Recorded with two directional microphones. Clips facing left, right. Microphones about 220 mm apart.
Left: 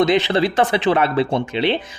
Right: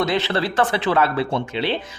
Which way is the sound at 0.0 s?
15° left (ahead or behind).